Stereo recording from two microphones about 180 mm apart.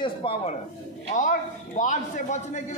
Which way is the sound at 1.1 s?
45° left (ahead or behind).